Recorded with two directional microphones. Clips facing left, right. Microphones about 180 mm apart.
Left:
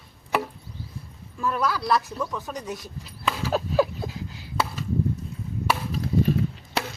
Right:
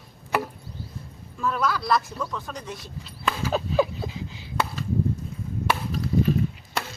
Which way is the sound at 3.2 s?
5° left (ahead or behind).